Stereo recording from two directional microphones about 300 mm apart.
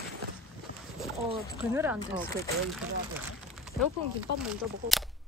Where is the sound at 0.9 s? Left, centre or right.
Centre.